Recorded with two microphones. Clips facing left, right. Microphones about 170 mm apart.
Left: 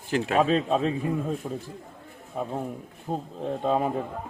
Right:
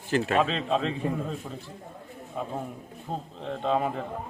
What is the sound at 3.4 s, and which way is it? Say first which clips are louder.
Speech: left 1 dB; 10° left (ahead or behind).